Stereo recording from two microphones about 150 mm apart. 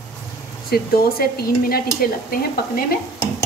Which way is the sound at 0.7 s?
90° left.